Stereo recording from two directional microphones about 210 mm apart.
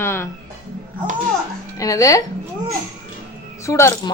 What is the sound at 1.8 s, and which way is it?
Speech, 15° left (ahead or behind).